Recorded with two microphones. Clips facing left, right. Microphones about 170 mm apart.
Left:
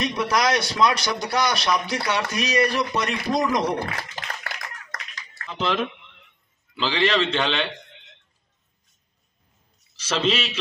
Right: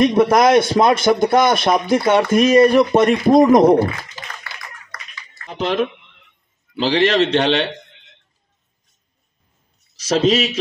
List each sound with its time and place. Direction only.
0.0 s a man's voice: 50° right (ahead or behind)
5.5 s a man's voice: 40° right (ahead or behind)
6.8 s a man's voice: 40° right (ahead or behind)
10.0 s a man's voice: 40° right (ahead or behind)